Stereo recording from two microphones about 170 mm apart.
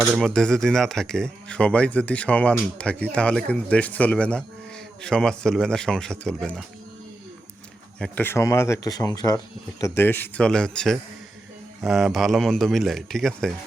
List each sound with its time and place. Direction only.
0.2 s a man's voice: 5° left (ahead or behind)
7.9 s a man's voice: 5° left (ahead or behind)